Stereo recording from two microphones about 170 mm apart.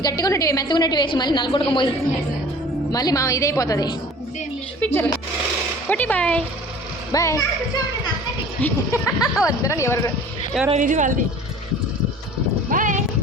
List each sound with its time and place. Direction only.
0.0 s a woman's voice: 20° left (ahead or behind)
2.9 s a woman's voice: 20° left (ahead or behind)
7.1 s a woman's voice: 20° left (ahead or behind)
8.6 s speech: 15° left (ahead or behind)
10.7 s speech: 45° right (ahead or behind)
12.7 s music: 50° right (ahead or behind)